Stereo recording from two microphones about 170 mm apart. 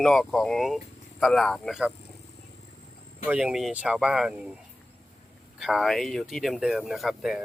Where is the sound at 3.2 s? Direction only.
5° right (ahead or behind).